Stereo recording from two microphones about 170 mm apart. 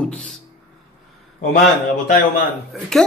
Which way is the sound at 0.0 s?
5° left (ahead or behind).